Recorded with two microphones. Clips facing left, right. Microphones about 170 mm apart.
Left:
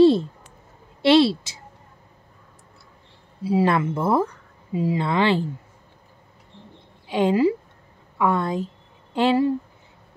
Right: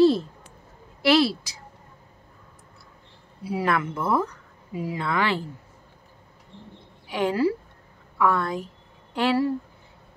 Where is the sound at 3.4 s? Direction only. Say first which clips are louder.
Left 5 dB; 25° left (ahead or behind).